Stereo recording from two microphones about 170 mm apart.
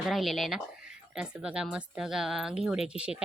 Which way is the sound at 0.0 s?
Centre (ahead or behind).